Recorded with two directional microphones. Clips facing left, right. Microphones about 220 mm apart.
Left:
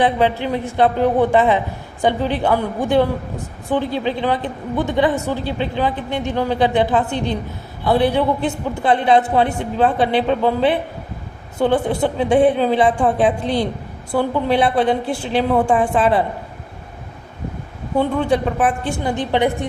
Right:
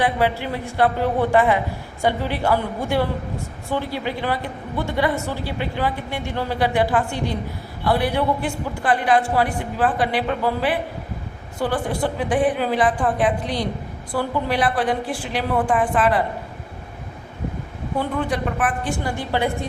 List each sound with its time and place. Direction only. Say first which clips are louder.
0.0 s a man's voice: left 4 dB; 20° left (ahead or behind)
18.3 s a man's voice: left 6 dB; 25° left (ahead or behind)